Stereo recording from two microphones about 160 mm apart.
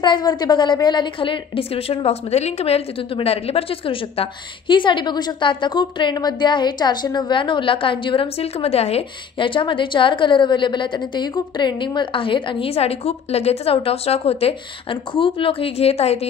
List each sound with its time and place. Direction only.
0.0 s a woman's voice: 25° left (ahead or behind)